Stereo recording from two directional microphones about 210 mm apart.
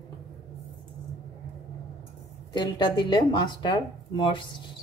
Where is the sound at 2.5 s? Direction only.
20° left (ahead or behind).